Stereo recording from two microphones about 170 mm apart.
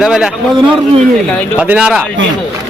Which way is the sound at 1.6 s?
5° right (ahead or behind).